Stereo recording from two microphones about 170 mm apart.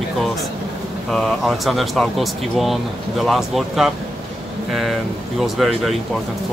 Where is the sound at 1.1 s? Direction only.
Centre (ahead or behind).